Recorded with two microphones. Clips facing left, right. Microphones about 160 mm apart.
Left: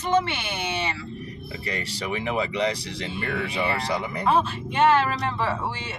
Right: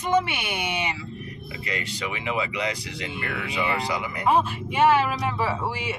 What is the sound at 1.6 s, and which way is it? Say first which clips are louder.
Speech: even; 35° left (ahead or behind).